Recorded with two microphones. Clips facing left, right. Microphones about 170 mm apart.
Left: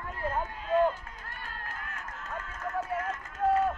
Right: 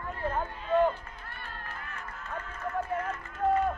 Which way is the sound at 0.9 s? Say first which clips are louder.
Even; 45° left (ahead or behind).